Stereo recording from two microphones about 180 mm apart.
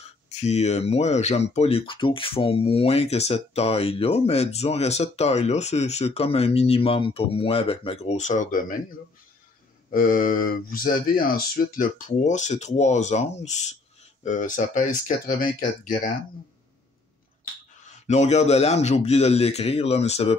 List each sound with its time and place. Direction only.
0.3 s speech: 35° left (ahead or behind)
9.8 s speech: 50° left (ahead or behind)
17.8 s speech: 40° left (ahead or behind)